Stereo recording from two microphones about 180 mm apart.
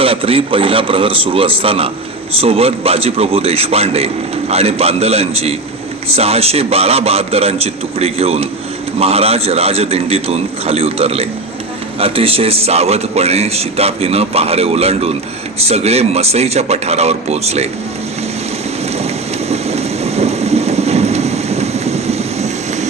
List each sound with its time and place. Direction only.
0.0 s a man's voice: 30° right (ahead or behind)
18.9 s rain: 35° right (ahead or behind)